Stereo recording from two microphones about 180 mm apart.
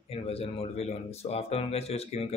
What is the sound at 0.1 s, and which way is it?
Speech, 35° left (ahead or behind).